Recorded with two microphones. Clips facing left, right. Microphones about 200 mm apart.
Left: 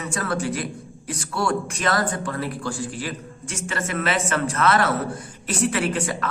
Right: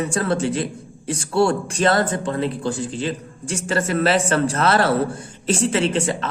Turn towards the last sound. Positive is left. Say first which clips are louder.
# right 4 dB
turn(degrees=-25)  # may be behind; listen again after turning